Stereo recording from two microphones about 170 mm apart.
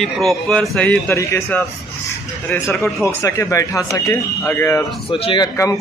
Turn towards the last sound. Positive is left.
turn(degrees=20)  # may be behind; listen again after turning